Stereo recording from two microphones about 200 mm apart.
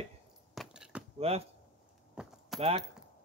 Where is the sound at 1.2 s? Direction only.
30° right (ahead or behind).